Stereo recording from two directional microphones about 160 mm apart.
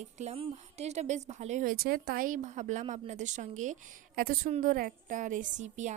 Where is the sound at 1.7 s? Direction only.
70° right (ahead or behind); by 5.9 s 50° right (ahead or behind).